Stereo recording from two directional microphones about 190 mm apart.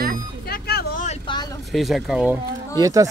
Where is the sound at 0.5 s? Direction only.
55° left (ahead or behind).